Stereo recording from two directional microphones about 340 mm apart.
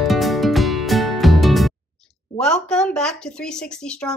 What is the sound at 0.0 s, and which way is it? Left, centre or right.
Music, centre.